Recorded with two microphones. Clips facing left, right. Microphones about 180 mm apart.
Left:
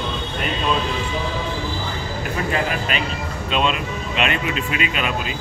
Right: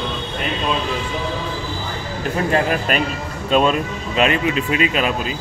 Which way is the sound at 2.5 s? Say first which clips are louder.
Right 6 dB; 45° right (ahead or behind).